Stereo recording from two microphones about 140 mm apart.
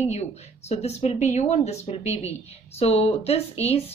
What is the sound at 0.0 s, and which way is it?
Speech, 50° left (ahead or behind).